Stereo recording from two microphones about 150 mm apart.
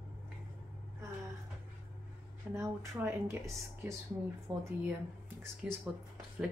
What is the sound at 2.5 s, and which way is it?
Speech, 20° right (ahead or behind).